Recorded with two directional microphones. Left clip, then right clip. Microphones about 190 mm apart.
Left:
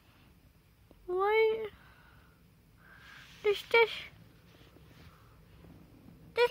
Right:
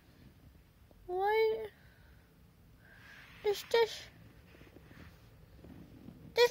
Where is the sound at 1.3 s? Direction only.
20° left (ahead or behind).